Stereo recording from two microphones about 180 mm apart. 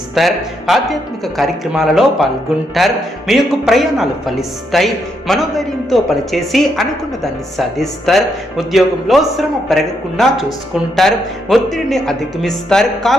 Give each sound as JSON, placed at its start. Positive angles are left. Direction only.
{"t": 0.1, "sound": "speech", "side_deg": 0}